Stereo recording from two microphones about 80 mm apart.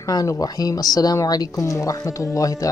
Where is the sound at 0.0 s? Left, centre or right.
Left.